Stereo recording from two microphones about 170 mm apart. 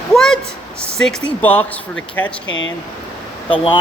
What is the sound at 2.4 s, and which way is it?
Speech, 90° left.